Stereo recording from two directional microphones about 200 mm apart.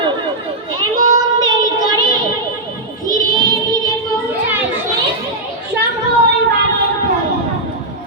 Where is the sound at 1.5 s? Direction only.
20° right (ahead or behind).